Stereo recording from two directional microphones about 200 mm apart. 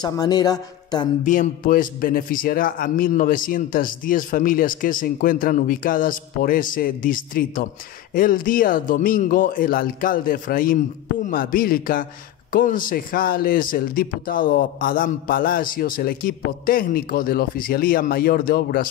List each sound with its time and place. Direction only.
0.0 s speech: 20° left (ahead or behind)
1.2 s a man's voice: 40° left (ahead or behind)